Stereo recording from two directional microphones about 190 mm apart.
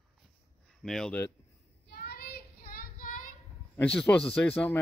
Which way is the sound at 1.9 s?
55° left (ahead or behind).